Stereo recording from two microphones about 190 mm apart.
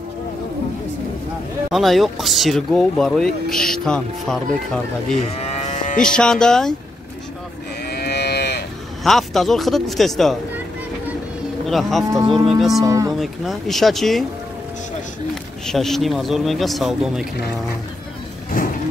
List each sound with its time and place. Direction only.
1.7 s speech: centre (ahead or behind)
5.3 s moo: 35° left (ahead or behind)
5.9 s speech: 5° left (ahead or behind)
7.8 s cattle: 55° left (ahead or behind)
9.0 s speech: centre (ahead or behind)
11.6 s speech: centre (ahead or behind)
12.8 s speech: 15° right (ahead or behind)
13.2 s speech: centre (ahead or behind)
15.6 s speech: centre (ahead or behind)
18.6 s vehicle: 50° left (ahead or behind)